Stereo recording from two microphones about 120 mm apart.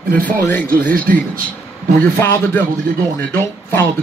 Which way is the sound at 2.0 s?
20° left (ahead or behind).